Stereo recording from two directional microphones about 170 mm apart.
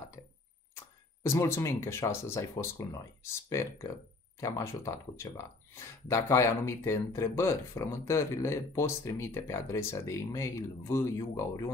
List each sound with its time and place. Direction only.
1.2 s speech: 15° left (ahead or behind)